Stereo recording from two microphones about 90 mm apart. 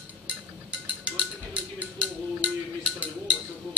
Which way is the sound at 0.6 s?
15° right (ahead or behind).